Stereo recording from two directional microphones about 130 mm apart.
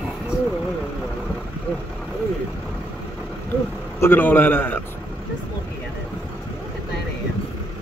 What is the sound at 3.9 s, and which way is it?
Speech, 15° left (ahead or behind).